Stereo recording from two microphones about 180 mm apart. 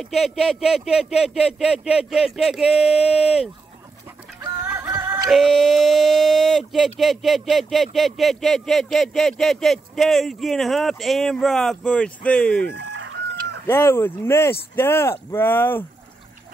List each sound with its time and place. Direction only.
0.0 s speech: centre (ahead or behind)
4.4 s music: 15° right (ahead or behind)
5.3 s speech: centre (ahead or behind)
12.7 s chicken: 75° right (ahead or behind)
13.7 s speech: 15° left (ahead or behind)